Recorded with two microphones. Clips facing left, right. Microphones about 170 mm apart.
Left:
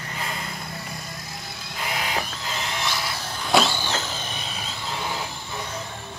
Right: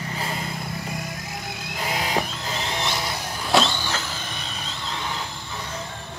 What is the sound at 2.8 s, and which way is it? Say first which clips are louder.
Vehicle: right 2 dB; 20° right (ahead or behind).